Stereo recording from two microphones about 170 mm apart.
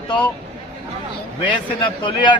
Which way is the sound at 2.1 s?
25° left (ahead or behind).